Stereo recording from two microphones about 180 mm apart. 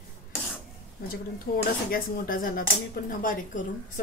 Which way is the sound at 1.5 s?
55° left (ahead or behind).